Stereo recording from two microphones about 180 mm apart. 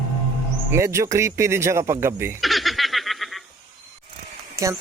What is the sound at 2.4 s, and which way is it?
Laughter, centre (ahead or behind).